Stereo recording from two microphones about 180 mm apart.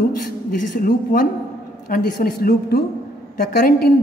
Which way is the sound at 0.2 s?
50° left (ahead or behind).